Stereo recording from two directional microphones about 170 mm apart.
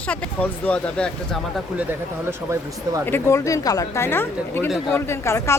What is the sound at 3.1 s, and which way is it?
A woman's voice, 15° left (ahead or behind).